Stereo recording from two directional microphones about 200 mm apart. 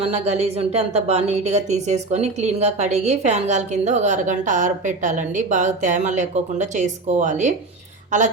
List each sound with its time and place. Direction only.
0.0 s speech: 30° right (ahead or behind)